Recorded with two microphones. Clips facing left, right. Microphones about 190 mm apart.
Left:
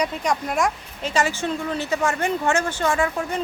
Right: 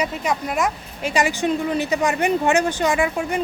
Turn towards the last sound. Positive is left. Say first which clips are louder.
# right 2 dB
turn(degrees=-15)  # may be behind; listen again after turning